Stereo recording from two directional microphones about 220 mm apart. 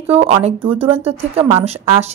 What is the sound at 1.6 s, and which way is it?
Speech, 30° right (ahead or behind).